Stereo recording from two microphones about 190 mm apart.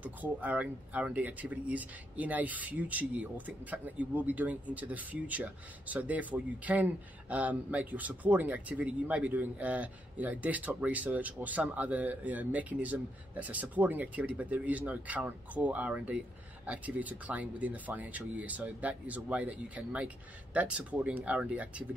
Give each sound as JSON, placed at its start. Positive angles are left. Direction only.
{"t": 0.0, "sound": "speech", "side_deg": -10}